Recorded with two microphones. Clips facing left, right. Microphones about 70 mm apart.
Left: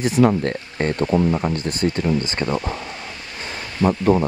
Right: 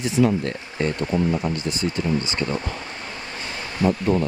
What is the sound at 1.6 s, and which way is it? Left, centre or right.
Speech, left.